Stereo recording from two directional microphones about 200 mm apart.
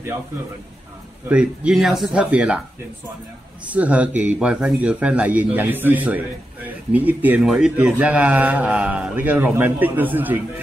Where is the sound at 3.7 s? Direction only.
5° right (ahead or behind).